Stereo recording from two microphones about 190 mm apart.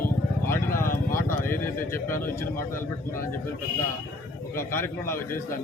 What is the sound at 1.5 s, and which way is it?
A man's voice, 10° left (ahead or behind).